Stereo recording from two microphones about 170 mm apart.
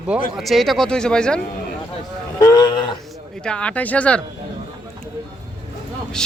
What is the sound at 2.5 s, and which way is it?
Speech, 25° left (ahead or behind).